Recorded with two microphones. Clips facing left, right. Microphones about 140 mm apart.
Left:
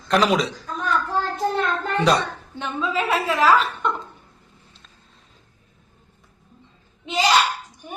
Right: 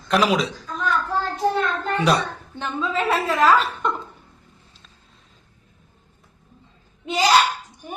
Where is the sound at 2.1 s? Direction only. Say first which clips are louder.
Left 1 dB; centre (ahead or behind).